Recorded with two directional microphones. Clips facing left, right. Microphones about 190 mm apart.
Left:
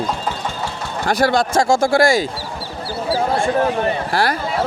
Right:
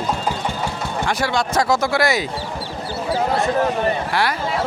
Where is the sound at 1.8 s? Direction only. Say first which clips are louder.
Left 5 dB; 50° left (ahead or behind).